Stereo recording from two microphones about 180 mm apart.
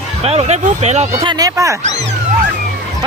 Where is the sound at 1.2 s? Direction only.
20° right (ahead or behind).